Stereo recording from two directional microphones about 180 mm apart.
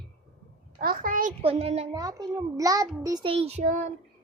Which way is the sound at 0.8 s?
55° right (ahead or behind).